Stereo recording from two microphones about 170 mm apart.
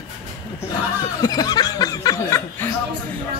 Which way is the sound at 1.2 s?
20° left (ahead or behind).